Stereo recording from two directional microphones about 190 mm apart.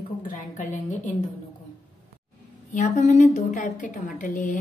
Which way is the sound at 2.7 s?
40° left (ahead or behind).